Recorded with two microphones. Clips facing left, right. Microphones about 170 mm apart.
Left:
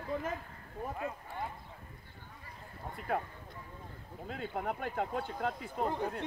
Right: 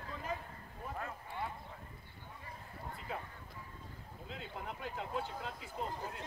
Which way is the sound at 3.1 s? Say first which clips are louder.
Left 10 dB; 60° left (ahead or behind).